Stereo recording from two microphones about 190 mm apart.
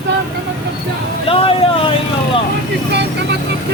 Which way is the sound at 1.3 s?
30° left (ahead or behind).